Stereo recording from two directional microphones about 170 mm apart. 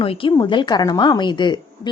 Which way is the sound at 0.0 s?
30° left (ahead or behind).